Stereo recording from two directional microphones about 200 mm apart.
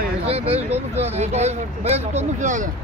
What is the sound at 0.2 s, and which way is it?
Speech, 30° right (ahead or behind).